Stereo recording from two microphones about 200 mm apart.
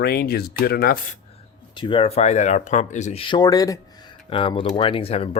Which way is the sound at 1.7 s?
25° left (ahead or behind).